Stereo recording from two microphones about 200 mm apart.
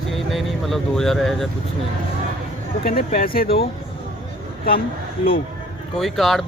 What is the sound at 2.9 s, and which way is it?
Speech, 45° left (ahead or behind).